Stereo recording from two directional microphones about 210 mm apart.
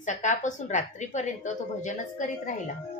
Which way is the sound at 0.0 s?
35° left (ahead or behind).